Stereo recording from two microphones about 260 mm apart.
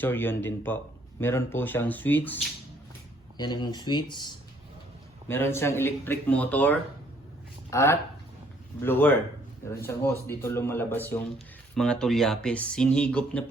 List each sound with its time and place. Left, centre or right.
0.0 s a man's voice: centre